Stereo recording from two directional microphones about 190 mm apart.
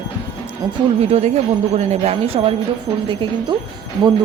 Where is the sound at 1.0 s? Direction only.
35° right (ahead or behind).